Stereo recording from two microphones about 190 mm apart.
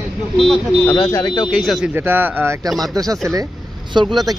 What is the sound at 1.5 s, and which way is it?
Speech, centre (ahead or behind).